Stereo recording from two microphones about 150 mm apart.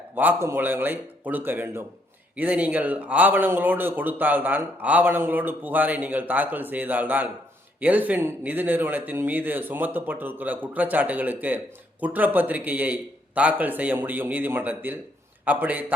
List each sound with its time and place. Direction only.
0.2 s speech: 15° right (ahead or behind)